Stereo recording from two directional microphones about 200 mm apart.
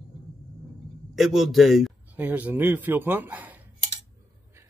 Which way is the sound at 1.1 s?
Centre (ahead or behind).